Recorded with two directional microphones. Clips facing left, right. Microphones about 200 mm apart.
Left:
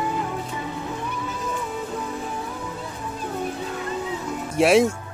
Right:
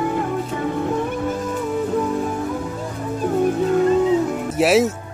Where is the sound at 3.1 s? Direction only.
50° right (ahead or behind).